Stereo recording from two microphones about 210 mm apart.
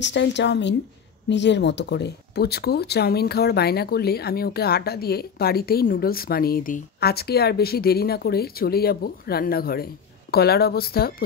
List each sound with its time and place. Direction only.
0.0 s a woman's voice: 55° left (ahead or behind)